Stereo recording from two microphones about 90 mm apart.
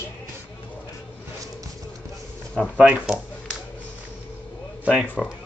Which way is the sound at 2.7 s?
15° right (ahead or behind).